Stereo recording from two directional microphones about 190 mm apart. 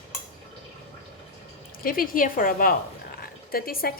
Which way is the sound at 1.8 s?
50° left (ahead or behind).